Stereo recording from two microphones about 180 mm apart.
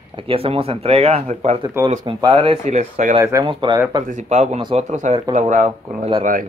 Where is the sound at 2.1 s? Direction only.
25° right (ahead or behind).